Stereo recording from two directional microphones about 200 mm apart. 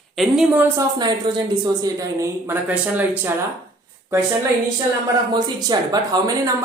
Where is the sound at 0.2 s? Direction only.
5° right (ahead or behind).